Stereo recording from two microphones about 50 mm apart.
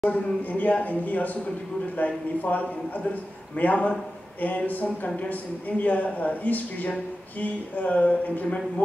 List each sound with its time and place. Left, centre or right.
0.0 s a man's voice: left